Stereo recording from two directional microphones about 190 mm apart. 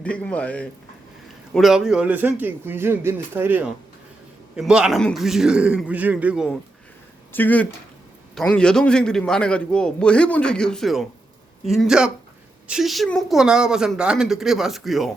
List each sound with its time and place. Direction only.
0.0 s a man's voice: 5° left (ahead or behind)
7.3 s a man's voice: 10° left (ahead or behind)